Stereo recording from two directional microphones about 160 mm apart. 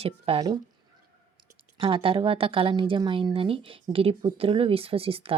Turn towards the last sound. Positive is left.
turn(degrees=-35)  # may be behind; listen again after turning